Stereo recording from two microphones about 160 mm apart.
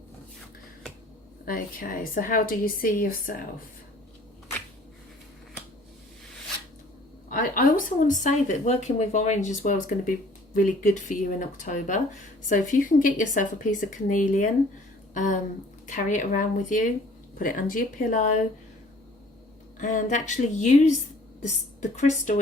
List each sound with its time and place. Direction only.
1.5 s a woman's voice: 60° left (ahead or behind)
7.3 s a woman's voice: 55° left (ahead or behind)
19.8 s a woman's voice: 50° left (ahead or behind)